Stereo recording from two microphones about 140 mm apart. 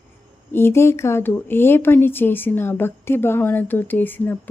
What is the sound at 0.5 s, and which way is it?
Speech, 15° left (ahead or behind).